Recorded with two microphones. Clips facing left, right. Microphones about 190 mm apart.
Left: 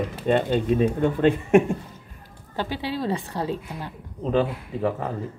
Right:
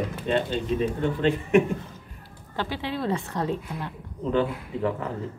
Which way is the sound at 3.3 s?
35° left (ahead or behind).